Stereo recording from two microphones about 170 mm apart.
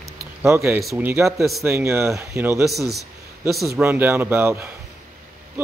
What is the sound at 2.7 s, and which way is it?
Speech, centre (ahead or behind).